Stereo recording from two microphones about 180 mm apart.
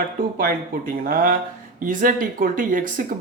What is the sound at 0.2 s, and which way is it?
Speech, 50° right (ahead or behind).